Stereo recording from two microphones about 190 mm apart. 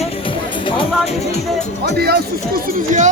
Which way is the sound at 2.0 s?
55° right (ahead or behind).